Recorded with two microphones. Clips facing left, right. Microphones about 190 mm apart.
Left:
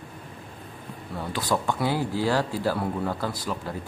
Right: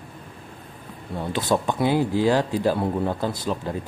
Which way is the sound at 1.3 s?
20° right (ahead or behind).